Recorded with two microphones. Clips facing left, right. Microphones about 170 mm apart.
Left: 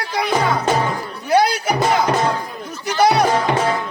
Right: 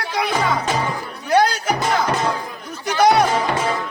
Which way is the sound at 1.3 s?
10° left (ahead or behind).